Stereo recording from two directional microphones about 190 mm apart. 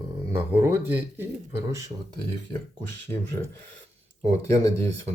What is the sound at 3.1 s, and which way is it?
Speech, 35° right (ahead or behind).